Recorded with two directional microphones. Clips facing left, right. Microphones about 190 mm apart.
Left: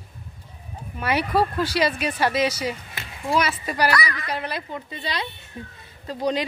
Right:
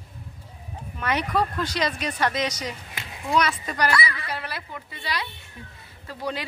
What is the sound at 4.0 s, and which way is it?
Speech, 30° right (ahead or behind).